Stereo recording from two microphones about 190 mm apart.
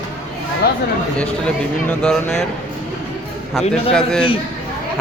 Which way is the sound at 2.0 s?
Centre (ahead or behind).